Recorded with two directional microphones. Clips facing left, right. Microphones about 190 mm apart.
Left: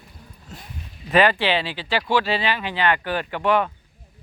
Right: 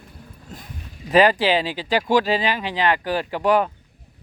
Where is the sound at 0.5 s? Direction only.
40° right (ahead or behind).